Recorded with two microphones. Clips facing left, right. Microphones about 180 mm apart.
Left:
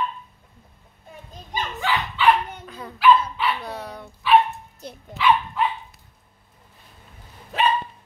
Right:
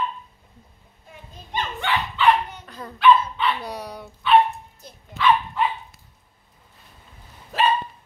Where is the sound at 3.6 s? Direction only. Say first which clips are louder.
Right 1 dB; 15° right (ahead or behind).